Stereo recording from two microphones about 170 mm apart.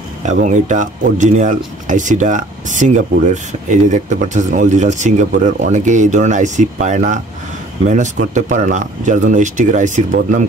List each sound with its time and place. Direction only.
0.2 s speech: 45° right (ahead or behind)